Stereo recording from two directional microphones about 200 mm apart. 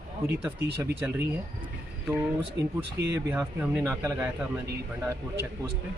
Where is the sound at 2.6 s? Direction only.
60° right (ahead or behind).